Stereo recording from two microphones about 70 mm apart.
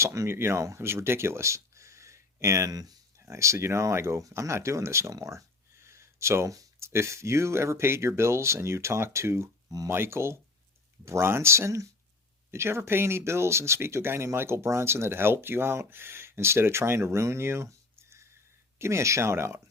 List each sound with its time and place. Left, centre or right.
0.0 s speech: right
5.1 s a sound: right
6.7 s speech: right